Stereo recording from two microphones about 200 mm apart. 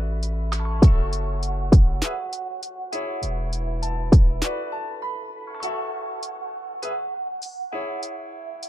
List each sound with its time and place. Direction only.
0.5 s music: centre (ahead or behind)
3.8 s music: centre (ahead or behind)